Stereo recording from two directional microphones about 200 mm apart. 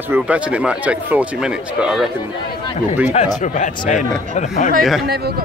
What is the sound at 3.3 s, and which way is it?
Speech, 40° left (ahead or behind).